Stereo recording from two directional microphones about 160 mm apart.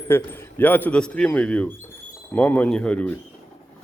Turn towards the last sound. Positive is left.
turn(degrees=5)  # may be behind; listen again after turning